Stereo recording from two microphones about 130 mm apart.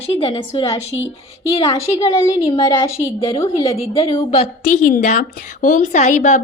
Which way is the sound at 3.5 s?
45° left (ahead or behind).